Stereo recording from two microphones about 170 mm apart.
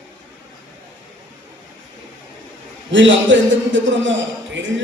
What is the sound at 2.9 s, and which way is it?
A man's voice, 90° right.